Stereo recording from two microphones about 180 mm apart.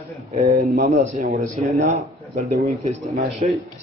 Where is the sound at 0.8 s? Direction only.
40° right (ahead or behind).